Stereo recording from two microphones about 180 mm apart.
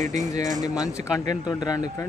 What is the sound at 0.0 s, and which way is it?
Speech, 40° right (ahead or behind).